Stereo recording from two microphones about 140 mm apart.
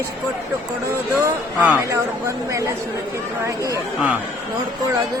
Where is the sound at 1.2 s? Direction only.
10° right (ahead or behind).